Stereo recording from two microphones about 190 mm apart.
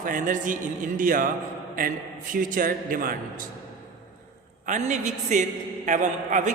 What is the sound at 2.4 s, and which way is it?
Speech, 45° right (ahead or behind).